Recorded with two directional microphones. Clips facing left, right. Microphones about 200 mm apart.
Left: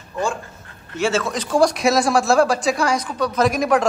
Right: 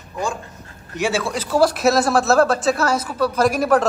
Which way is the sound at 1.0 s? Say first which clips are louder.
Left 1 dB; 15° right (ahead or behind).